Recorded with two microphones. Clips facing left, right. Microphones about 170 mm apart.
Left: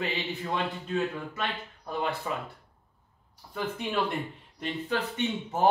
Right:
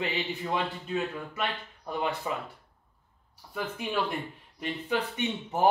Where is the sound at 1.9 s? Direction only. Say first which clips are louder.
Even; 20° right (ahead or behind).